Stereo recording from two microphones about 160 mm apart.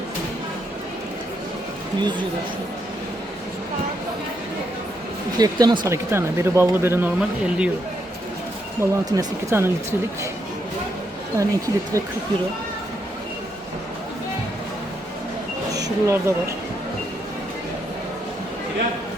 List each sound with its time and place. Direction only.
2.0 s a woman's voice: 30° right (ahead or behind)
5.4 s speech: 25° right (ahead or behind)
8.8 s speech: 20° right (ahead or behind)
11.3 s a woman's voice: 20° right (ahead or behind)
15.7 s a sound: 20° right (ahead or behind)